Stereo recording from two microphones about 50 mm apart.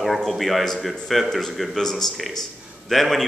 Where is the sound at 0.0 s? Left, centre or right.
Centre.